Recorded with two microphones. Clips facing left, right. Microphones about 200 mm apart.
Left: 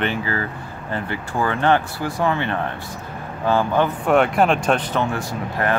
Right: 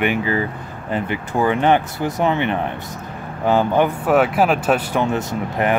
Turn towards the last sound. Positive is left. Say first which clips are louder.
# right 3 dB
turn(degrees=-20)  # may be behind; listen again after turning